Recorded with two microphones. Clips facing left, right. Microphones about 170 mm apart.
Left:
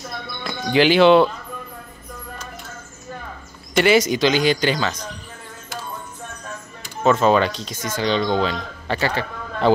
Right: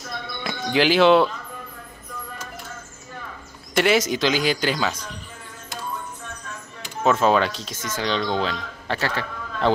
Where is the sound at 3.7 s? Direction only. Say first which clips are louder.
Left 3 dB; centre (ahead or behind).